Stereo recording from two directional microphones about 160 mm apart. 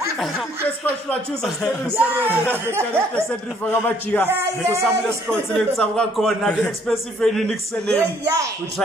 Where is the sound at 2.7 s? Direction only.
15° right (ahead or behind).